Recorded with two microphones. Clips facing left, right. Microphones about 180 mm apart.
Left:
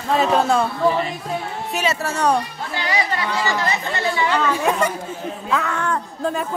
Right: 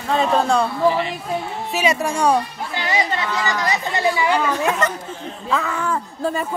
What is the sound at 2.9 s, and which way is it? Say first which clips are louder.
Speech: right 1 dB; 20° right (ahead or behind).